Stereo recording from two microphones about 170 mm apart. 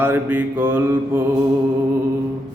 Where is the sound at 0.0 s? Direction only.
10° right (ahead or behind).